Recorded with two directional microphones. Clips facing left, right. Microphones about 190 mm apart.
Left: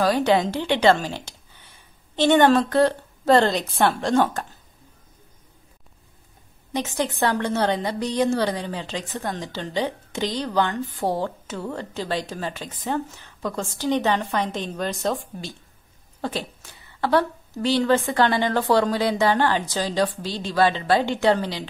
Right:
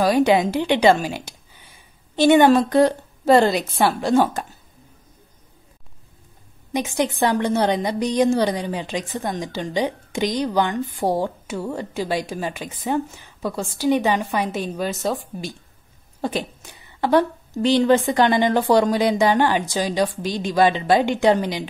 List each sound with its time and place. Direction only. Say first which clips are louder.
0.0 s a woman's voice: right 3 dB; 15° right (ahead or behind)
6.7 s a woman's voice: right 3 dB; 10° right (ahead or behind)